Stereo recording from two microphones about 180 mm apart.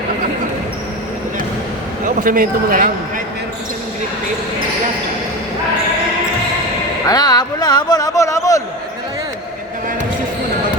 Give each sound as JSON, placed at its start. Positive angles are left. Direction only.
{"t": 2.0, "sound": "a man's voice", "side_deg": -50}
{"t": 7.1, "sound": "speech", "side_deg": 20}